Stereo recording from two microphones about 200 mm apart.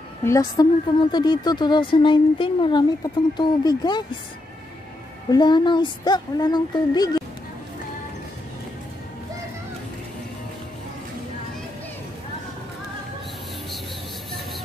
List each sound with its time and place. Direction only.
0.2 s a woman's voice: 15° left (ahead or behind)
5.3 s speech: 20° left (ahead or behind)